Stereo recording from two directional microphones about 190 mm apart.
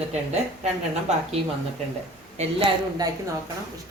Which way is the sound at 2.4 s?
35° right (ahead or behind).